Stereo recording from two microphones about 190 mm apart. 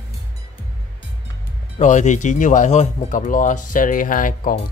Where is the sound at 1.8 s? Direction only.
40° left (ahead or behind).